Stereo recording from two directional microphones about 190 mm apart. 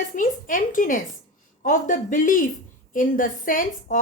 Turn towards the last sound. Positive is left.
turn(degrees=45)  # may be behind; listen again after turning